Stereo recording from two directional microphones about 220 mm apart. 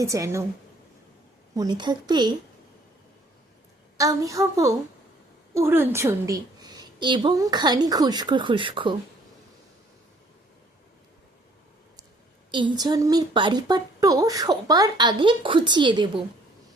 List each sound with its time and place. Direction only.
0.0 s a woman's voice: 15° right (ahead or behind)
1.5 s a woman's voice: 20° right (ahead or behind)
3.9 s a woman's voice: 15° right (ahead or behind)
12.5 s a woman's voice: 20° right (ahead or behind)